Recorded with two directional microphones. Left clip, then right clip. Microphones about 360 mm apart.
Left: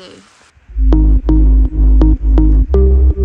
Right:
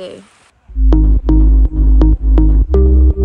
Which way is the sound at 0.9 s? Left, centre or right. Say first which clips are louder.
Even; centre.